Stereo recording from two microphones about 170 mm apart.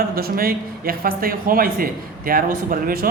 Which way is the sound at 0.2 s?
60° right (ahead or behind).